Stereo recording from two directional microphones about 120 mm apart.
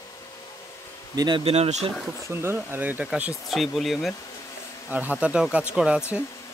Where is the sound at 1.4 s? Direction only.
60° right (ahead or behind).